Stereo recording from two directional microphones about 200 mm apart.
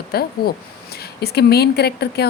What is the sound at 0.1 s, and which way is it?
A woman's voice, 50° left (ahead or behind).